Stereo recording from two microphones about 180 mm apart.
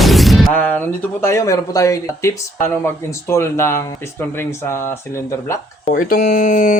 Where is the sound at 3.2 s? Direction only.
15° left (ahead or behind).